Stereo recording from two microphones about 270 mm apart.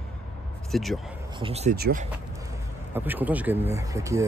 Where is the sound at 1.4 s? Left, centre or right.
Right.